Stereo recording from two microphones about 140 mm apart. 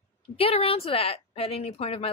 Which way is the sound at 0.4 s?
45° left (ahead or behind).